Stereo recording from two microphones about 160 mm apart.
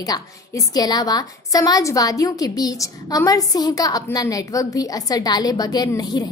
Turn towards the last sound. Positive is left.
turn(degrees=25)  # may be behind; listen again after turning